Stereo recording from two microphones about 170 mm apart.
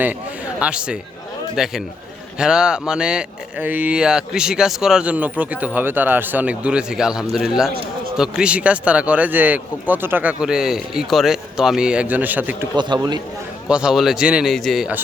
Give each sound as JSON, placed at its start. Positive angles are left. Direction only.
{"t": 0.6, "sound": "speech", "side_deg": -5}
{"t": 12.7, "sound": "a man's voice", "side_deg": -25}
{"t": 13.7, "sound": "speech", "side_deg": -5}